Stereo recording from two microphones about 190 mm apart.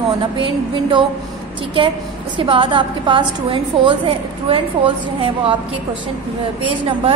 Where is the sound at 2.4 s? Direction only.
25° right (ahead or behind).